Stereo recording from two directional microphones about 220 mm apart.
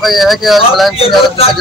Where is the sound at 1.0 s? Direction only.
25° left (ahead or behind).